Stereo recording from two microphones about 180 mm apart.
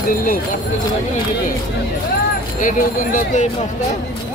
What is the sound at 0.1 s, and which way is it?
Speech, 50° left (ahead or behind).